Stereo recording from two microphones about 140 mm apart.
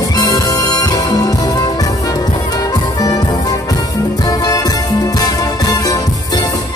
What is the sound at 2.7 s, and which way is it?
Music, 25° left (ahead or behind).